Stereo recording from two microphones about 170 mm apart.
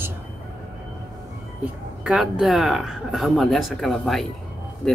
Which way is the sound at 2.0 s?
5° right (ahead or behind).